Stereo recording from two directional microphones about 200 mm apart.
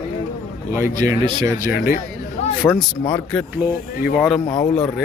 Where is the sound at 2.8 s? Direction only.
5° left (ahead or behind).